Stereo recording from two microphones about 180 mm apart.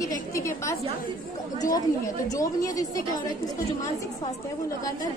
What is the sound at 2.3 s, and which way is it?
Speech, 20° left (ahead or behind).